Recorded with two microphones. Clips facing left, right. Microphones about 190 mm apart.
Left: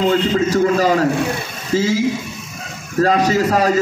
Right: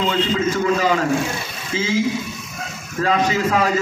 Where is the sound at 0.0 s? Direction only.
40° left (ahead or behind).